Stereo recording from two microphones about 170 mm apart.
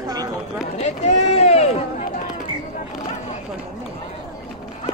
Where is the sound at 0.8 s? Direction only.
40° left (ahead or behind).